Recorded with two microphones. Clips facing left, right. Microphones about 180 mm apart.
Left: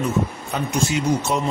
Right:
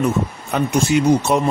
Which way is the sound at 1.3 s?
65° right (ahead or behind).